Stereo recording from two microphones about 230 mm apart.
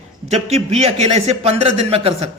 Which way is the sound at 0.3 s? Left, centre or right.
Right.